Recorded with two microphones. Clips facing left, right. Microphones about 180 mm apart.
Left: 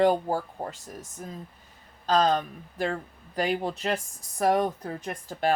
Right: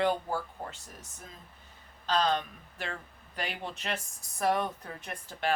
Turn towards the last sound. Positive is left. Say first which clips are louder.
# left 7 dB
turn(degrees=40)  # may be behind; listen again after turning